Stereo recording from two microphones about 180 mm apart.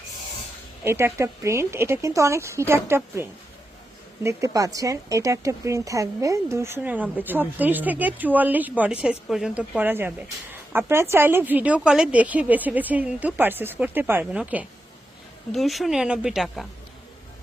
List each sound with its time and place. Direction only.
0.9 s speech: 15° right (ahead or behind)